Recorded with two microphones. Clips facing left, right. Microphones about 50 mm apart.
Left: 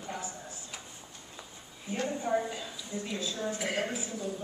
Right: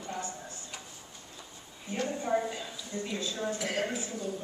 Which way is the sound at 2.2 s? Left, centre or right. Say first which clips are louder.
Right 1 dB; centre.